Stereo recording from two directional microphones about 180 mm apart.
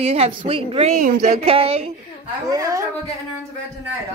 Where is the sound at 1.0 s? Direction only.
45° right (ahead or behind).